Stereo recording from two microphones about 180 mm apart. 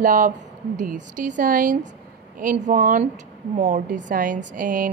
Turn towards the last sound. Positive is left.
turn(degrees=-50)  # may be behind; listen again after turning